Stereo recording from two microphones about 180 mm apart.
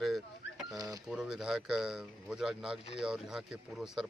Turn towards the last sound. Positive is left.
turn(degrees=-5)  # may be behind; listen again after turning